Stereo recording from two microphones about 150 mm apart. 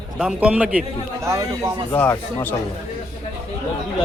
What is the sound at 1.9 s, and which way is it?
Speech, 15° left (ahead or behind).